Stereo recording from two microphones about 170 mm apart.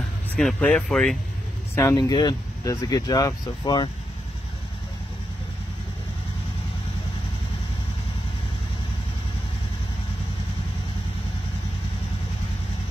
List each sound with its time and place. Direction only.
0.4 s speech: 5° left (ahead or behind)
1.8 s speech: 20° left (ahead or behind)